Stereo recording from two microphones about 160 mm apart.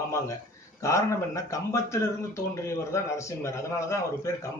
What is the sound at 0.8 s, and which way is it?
A man's voice, 20° left (ahead or behind).